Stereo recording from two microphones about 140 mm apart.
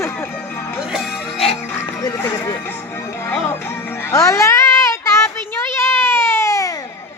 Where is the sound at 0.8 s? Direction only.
Centre (ahead or behind).